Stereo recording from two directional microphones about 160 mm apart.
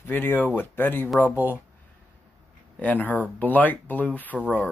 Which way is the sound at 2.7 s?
10° left (ahead or behind).